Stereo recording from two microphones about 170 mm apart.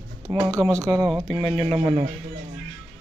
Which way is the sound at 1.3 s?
35° right (ahead or behind).